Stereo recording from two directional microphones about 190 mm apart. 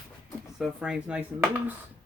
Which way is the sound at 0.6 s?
5° right (ahead or behind).